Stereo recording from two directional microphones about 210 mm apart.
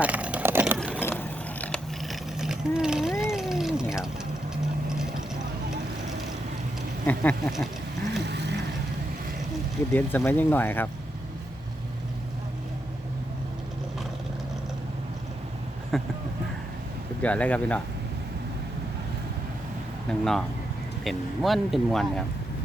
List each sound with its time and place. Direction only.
0.0 s vehicle: 5° right (ahead or behind)
0.9 s vehicle: 10° left (ahead or behind)
3.3 s a sound: centre (ahead or behind)
7.1 s speech: 5° left (ahead or behind)
8.3 s vehicle: 55° right (ahead or behind)
9.9 s speech: 10° left (ahead or behind)
15.9 s speech: centre (ahead or behind)
17.2 s speech: 5° left (ahead or behind)
20.1 s speech: centre (ahead or behind)